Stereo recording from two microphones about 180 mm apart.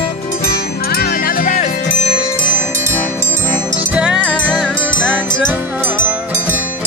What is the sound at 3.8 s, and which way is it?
Music, 5° right (ahead or behind).